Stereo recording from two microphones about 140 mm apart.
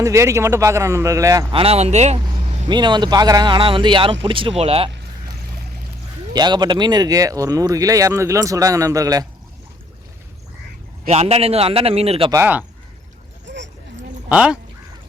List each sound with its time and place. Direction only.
0.0 s speech: 20° right (ahead or behind)
1.5 s a man's voice: 45° right (ahead or behind)
2.6 s speech: 30° right (ahead or behind)
6.3 s speech: 30° right (ahead or behind)
11.1 s a man's voice: 50° right (ahead or behind)
12.3 s speech: 15° right (ahead or behind)
14.3 s speech: 5° right (ahead or behind)